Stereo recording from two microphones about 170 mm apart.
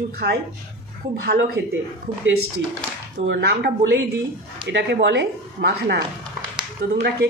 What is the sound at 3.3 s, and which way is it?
Speech, 75° right (ahead or behind).